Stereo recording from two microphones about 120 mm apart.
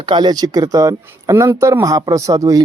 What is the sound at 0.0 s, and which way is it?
Speech, 40° right (ahead or behind).